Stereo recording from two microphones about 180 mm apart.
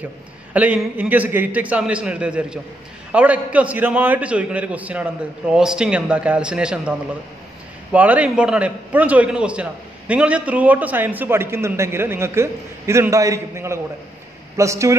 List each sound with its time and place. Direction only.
0.5 s a man's voice: 10° right (ahead or behind)